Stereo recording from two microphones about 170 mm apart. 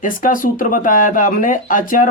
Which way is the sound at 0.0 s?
55° left (ahead or behind).